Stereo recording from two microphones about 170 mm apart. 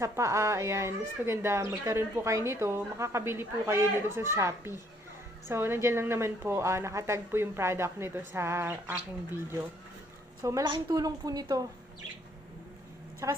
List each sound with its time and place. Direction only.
0.0 s speech: 20° right (ahead or behind)
10.4 s a woman's voice: 20° right (ahead or behind)
13.2 s a woman's voice: 20° right (ahead or behind)